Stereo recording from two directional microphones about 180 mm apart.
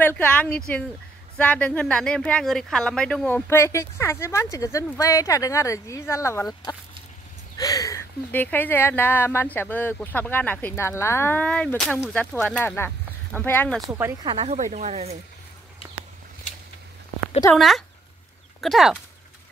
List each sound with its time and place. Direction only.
0.0 s speech: 10° left (ahead or behind)
3.4 s speech: 15° left (ahead or behind)
14.3 s speech: 40° right (ahead or behind)
17.6 s speech: centre (ahead or behind)